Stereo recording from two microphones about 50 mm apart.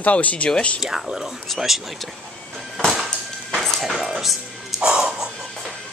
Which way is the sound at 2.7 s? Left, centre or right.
Centre.